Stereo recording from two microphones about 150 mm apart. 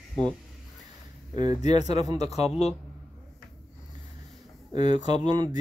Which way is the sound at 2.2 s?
45° left (ahead or behind).